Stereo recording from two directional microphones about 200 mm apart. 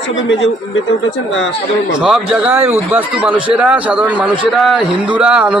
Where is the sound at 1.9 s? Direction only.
5° right (ahead or behind).